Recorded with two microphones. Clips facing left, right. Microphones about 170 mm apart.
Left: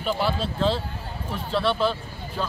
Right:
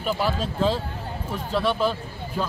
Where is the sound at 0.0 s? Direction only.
10° right (ahead or behind).